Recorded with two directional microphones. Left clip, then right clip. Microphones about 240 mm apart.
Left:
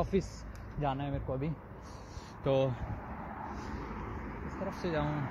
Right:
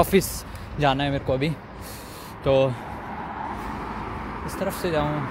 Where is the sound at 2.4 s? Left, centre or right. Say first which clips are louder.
Right 10 dB; centre.